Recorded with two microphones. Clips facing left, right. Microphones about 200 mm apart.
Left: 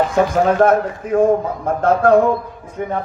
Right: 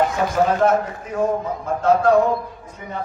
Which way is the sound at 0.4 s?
55° left (ahead or behind).